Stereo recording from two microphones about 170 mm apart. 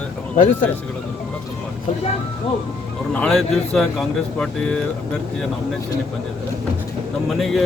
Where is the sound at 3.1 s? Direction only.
5° left (ahead or behind).